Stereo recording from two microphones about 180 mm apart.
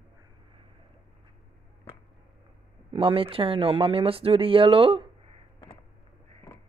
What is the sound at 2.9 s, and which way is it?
Speech, 30° right (ahead or behind).